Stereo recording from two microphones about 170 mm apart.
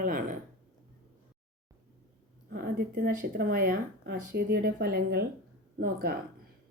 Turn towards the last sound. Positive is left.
turn(degrees=-65)  # may be behind; listen again after turning